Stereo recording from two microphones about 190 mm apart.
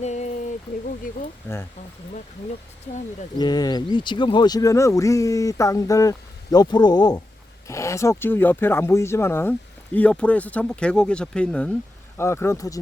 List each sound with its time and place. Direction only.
0.0 s a sound: 35° left (ahead or behind)
1.5 s speech: 10° left (ahead or behind)
3.3 s speech: 20° left (ahead or behind)